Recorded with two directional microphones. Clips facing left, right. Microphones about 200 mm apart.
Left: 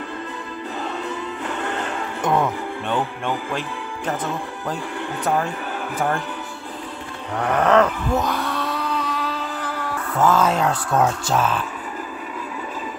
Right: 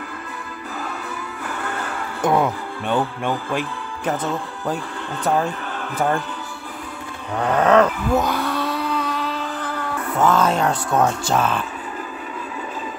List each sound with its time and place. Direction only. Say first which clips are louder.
1.5 s music: left 1 dB; 20° left (ahead or behind)
2.2 s speech: right 2 dB; 10° right (ahead or behind)
7.3 s a sound: right 1 dB; centre (ahead or behind)
10.1 s speech: even; 5° left (ahead or behind)